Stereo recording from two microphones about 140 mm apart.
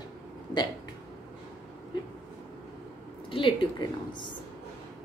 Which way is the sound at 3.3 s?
40° left (ahead or behind).